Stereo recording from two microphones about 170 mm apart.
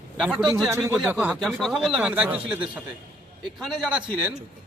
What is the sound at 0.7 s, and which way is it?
Speech, 15° right (ahead or behind).